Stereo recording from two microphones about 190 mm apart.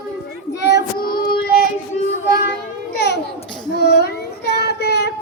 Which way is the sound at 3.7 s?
60° left (ahead or behind).